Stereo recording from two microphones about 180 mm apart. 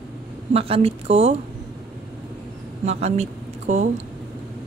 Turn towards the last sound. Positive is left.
turn(degrees=-40)  # may be behind; listen again after turning